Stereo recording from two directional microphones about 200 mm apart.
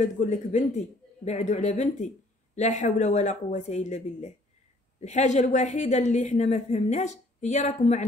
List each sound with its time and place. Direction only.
0.0 s a woman's voice: 35° left (ahead or behind)